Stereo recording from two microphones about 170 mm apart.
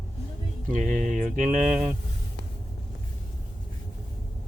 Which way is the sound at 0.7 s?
50° right (ahead or behind).